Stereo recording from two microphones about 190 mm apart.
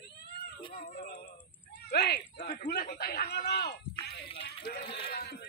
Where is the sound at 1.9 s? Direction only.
60° left (ahead or behind).